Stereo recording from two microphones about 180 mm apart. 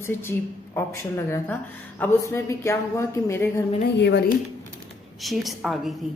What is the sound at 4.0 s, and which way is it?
Speech, 75° left (ahead or behind).